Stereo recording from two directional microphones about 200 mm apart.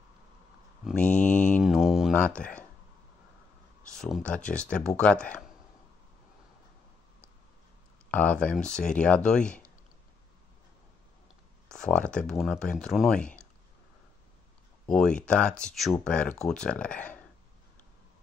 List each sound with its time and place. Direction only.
0.8 s speech: 5° left (ahead or behind)
1.2 s mantra: 5° left (ahead or behind)
2.1 s speech: 5° left (ahead or behind)
3.9 s speech: 5° left (ahead or behind)
8.1 s speech: 5° left (ahead or behind)
11.7 s speech: 5° left (ahead or behind)
14.9 s speech: 5° left (ahead or behind)